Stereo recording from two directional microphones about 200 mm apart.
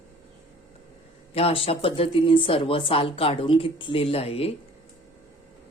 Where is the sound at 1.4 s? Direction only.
30° left (ahead or behind).